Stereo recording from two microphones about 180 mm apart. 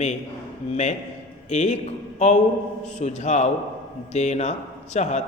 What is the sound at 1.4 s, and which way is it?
A man's voice, 40° left (ahead or behind).